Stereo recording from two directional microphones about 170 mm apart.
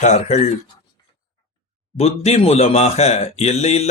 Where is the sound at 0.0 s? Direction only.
40° left (ahead or behind).